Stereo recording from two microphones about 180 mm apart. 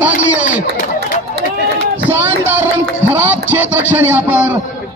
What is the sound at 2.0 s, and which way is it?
A man's voice, 10° right (ahead or behind).